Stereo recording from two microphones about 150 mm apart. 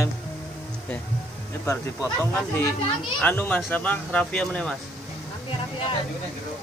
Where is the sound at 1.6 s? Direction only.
15° left (ahead or behind).